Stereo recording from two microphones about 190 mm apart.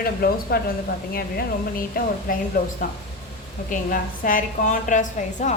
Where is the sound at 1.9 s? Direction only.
50° left (ahead or behind).